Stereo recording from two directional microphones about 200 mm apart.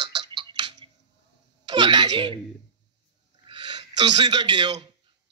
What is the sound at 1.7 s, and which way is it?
Speech, 25° right (ahead or behind).